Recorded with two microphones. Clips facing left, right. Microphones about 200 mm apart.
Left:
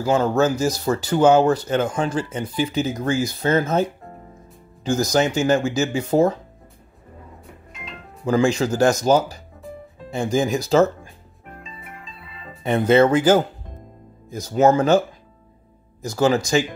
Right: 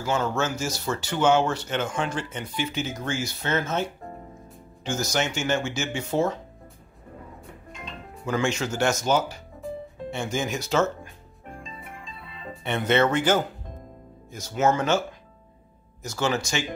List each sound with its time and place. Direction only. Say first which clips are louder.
0.0 s speech: left 8 dB; 35° left (ahead or behind)
4.8 s speech: left 8 dB; 35° left (ahead or behind)
7.7 s music: even; centre (ahead or behind)
8.3 s speech: left 7 dB; 35° left (ahead or behind)
11.6 s music: left 1 dB; 5° left (ahead or behind)
12.6 s speech: left 7 dB; 35° left (ahead or behind)
14.4 s speech: left 7 dB; 35° left (ahead or behind)